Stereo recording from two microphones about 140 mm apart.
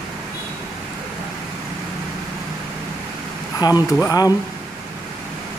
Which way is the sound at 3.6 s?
30° left (ahead or behind).